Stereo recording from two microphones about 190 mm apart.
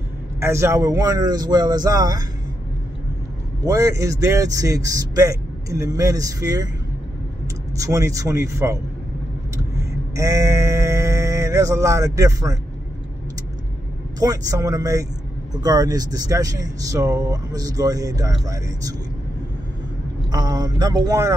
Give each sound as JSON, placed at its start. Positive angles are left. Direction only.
{"t": 0.4, "sound": "speech", "side_deg": -15}
{"t": 3.6, "sound": "a man's voice", "side_deg": -15}
{"t": 7.8, "sound": "a man's voice", "side_deg": -15}
{"t": 10.1, "sound": "a sound", "side_deg": -15}
{"t": 14.2, "sound": "speech", "side_deg": -20}
{"t": 20.2, "sound": "speech", "side_deg": -20}